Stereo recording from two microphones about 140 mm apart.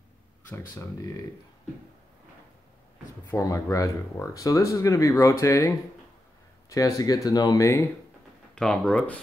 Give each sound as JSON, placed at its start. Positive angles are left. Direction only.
{"t": 0.5, "sound": "speech", "side_deg": 20}
{"t": 3.3, "sound": "speech", "side_deg": 20}
{"t": 6.7, "sound": "speech", "side_deg": 25}
{"t": 8.5, "sound": "speech", "side_deg": 5}